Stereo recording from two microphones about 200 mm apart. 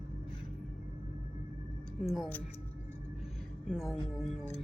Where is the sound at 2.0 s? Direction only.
Centre (ahead or behind).